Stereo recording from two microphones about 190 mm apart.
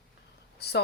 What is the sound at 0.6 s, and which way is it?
Speech, 60° left (ahead or behind).